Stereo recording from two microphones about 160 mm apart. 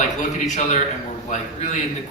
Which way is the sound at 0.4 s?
45° left (ahead or behind).